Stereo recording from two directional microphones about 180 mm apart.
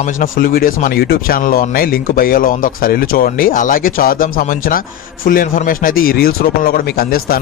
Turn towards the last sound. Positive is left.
turn(degrees=55)  # may be behind; listen again after turning